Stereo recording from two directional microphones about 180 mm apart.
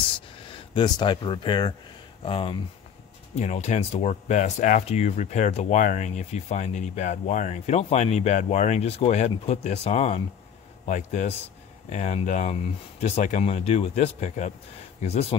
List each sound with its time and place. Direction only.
0.5 s speech: 25° left (ahead or behind)